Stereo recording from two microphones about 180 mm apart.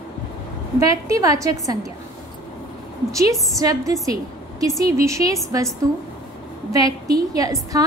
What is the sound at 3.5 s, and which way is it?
A woman's voice, 20° right (ahead or behind).